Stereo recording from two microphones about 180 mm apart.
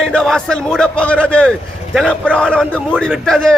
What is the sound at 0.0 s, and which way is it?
A man's voice, 5° left (ahead or behind).